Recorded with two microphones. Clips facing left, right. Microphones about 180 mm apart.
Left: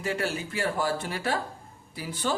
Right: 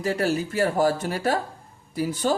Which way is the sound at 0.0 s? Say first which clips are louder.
Right 6 dB; 40° right (ahead or behind).